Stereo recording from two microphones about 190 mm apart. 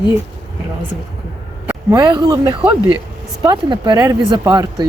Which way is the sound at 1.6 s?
15° right (ahead or behind).